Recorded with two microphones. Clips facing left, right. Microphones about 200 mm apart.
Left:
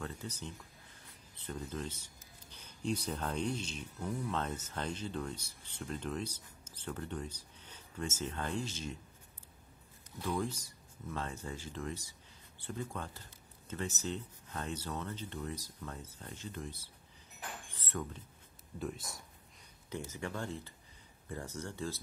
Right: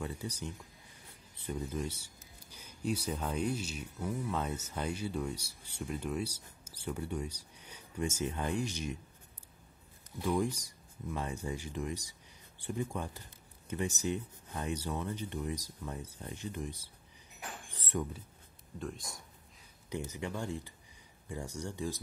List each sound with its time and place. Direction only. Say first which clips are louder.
0.0 s speech: right 3 dB; 10° right (ahead or behind)
10.1 s speech: right 4 dB; 15° right (ahead or behind)
17.6 s a sound: right 5 dB; 15° right (ahead or behind)
18.8 s speech: left 1 dB; 5° left (ahead or behind)
19.9 s speech: right 2 dB; 15° right (ahead or behind)